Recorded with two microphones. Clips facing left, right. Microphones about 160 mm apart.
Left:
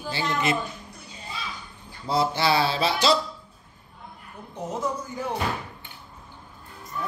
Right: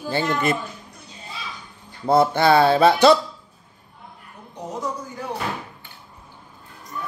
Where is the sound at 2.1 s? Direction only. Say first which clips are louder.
Right 7 dB; 55° right (ahead or behind).